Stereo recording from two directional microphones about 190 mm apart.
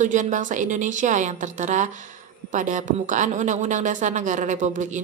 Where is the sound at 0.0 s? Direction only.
40° right (ahead or behind).